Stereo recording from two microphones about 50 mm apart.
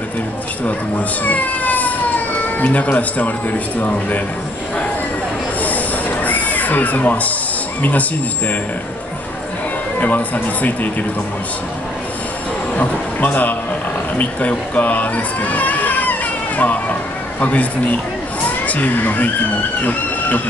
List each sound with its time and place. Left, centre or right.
0.7 s speech: left
6.2 s a sound: left
7.8 s speech: left
9.9 s speech: left
12.7 s speech: left
14.1 s a sound: left
17.4 s speech: left